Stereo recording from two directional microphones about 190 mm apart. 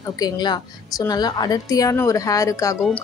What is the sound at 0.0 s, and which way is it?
A woman's voice, 20° left (ahead or behind).